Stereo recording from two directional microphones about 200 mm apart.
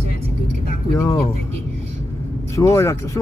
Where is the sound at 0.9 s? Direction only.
15° left (ahead or behind).